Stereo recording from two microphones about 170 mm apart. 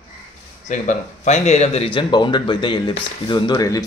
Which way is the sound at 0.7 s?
45° left (ahead or behind).